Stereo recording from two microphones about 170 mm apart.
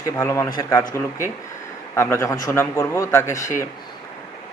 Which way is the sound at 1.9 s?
15° left (ahead or behind).